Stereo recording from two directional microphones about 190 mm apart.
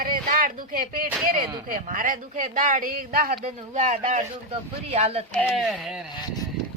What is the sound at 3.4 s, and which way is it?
Speech, 40° right (ahead or behind).